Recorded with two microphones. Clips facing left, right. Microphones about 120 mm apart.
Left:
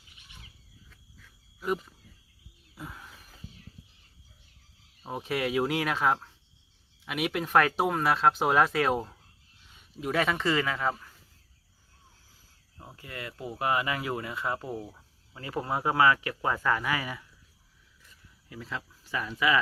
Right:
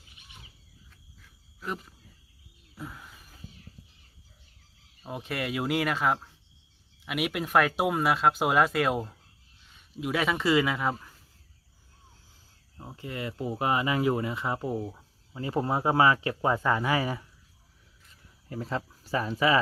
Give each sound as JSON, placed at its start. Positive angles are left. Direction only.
{"t": 2.7, "sound": "a sound", "side_deg": 0}
{"t": 5.0, "sound": "speech", "side_deg": 0}
{"t": 12.7, "sound": "speech", "side_deg": -15}
{"t": 18.4, "sound": "speech", "side_deg": -40}